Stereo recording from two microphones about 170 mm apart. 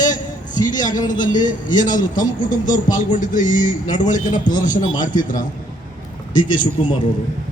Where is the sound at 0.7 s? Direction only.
50° left (ahead or behind).